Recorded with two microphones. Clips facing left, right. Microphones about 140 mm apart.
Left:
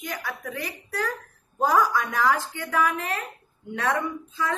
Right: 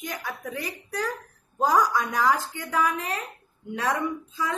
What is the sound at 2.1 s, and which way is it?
A woman's voice, 15° right (ahead or behind).